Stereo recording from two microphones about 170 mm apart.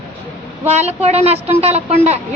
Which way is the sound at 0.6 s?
40° right (ahead or behind).